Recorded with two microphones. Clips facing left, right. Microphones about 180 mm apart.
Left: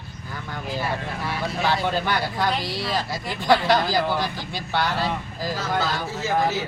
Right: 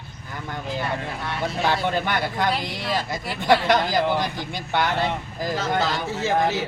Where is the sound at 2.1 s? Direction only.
20° right (ahead or behind).